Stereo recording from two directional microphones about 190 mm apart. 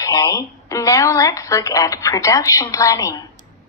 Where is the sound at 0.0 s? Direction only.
20° left (ahead or behind).